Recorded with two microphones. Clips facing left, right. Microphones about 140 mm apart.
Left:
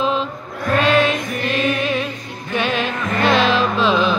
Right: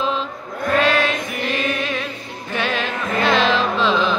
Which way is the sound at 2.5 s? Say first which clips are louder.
Left 2 dB; 15° left (ahead or behind).